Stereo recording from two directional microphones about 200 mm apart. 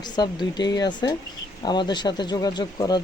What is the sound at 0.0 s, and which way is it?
Speech, 20° left (ahead or behind).